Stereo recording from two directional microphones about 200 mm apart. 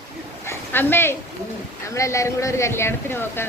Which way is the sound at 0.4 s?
10° left (ahead or behind).